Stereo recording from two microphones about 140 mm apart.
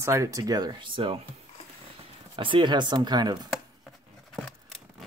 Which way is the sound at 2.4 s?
35° right (ahead or behind).